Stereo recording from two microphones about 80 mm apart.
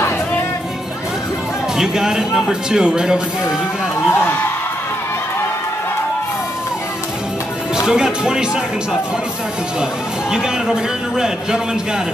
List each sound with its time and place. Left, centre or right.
1.8 s speech: centre
4.1 s a man's voice: left
7.7 s speech: centre
10.3 s speech: centre